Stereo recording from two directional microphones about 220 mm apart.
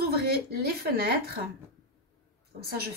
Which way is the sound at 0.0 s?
45° right (ahead or behind).